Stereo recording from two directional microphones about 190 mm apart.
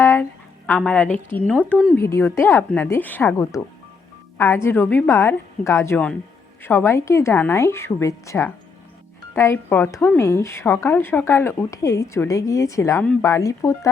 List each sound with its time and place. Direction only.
0.0 s a sound: 15° left (ahead or behind)
0.8 s a woman's voice: 5° left (ahead or behind)
2.0 s speech: 15° left (ahead or behind)